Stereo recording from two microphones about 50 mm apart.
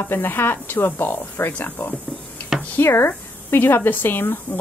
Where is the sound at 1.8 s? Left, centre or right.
Left.